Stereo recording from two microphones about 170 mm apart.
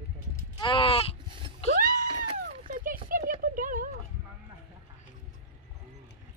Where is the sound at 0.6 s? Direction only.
30° left (ahead or behind).